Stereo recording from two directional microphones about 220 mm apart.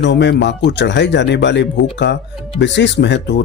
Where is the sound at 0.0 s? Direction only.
55° left (ahead or behind).